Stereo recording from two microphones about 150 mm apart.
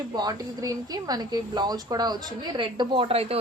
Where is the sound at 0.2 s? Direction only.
25° right (ahead or behind).